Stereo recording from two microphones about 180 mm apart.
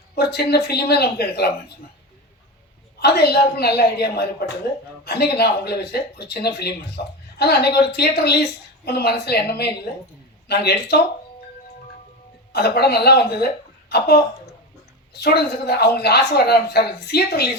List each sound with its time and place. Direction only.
0.2 s speech: 65° left (ahead or behind)
3.0 s speech: 65° left (ahead or behind)
12.5 s speech: 65° left (ahead or behind)
15.1 s speech: 65° left (ahead or behind)